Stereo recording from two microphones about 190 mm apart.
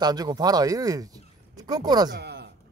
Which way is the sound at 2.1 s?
60° right (ahead or behind).